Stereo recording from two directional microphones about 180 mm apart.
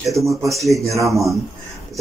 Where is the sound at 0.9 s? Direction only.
15° right (ahead or behind).